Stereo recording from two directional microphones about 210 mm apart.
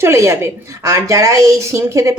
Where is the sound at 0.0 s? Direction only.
15° right (ahead or behind).